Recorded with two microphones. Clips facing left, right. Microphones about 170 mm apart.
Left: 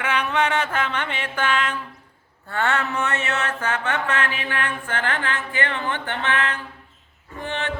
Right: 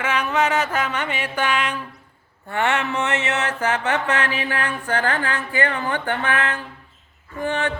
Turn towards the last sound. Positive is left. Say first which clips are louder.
# right 5 dB
turn(degrees=-45)  # may be behind; listen again after turning